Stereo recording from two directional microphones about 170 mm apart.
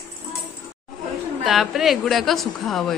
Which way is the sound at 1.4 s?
Centre (ahead or behind).